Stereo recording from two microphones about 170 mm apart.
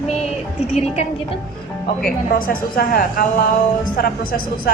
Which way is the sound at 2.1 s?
60° left (ahead or behind).